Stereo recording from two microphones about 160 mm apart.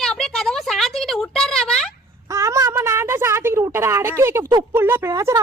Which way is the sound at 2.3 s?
20° right (ahead or behind).